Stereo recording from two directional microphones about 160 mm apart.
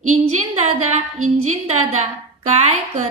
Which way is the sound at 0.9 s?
45° right (ahead or behind).